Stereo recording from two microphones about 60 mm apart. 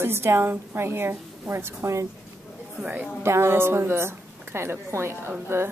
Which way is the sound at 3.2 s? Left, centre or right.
Right.